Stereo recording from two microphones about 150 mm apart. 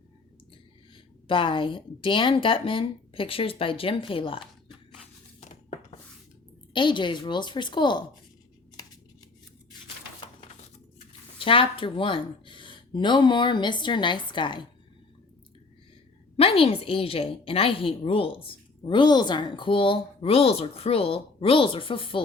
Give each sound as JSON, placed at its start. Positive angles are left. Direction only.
{"t": 1.3, "sound": "a woman's voice", "side_deg": 35}
{"t": 6.7, "sound": "a woman's voice", "side_deg": 30}
{"t": 11.3, "sound": "a woman's voice", "side_deg": 35}
{"t": 16.4, "sound": "a woman's voice", "side_deg": 40}